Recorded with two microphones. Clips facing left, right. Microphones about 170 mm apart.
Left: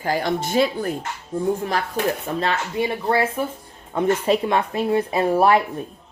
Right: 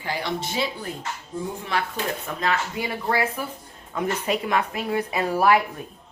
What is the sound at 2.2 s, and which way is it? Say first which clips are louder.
Speech: left 2 dB; 30° left (ahead or behind).